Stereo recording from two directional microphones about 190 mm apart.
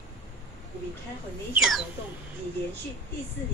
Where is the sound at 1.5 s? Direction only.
5° right (ahead or behind).